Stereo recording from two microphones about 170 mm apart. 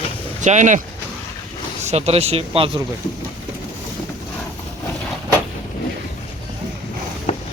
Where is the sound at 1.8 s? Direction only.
40° right (ahead or behind).